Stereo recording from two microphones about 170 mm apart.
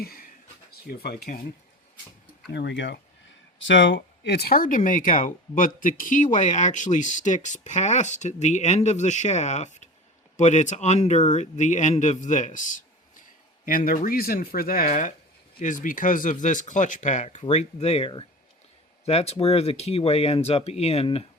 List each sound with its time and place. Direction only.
0.0 s a sound: 60° left (ahead or behind)
0.7 s speech: 65° left (ahead or behind)
2.5 s speech: 90° left; by 21.2 s 35° left (ahead or behind)